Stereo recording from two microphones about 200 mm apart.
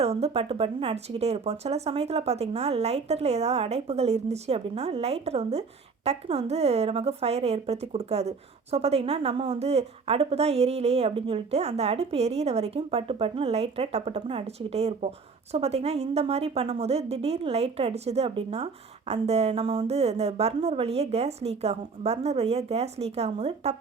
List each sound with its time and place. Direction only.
0.0 s a woman's voice: 30° right (ahead or behind)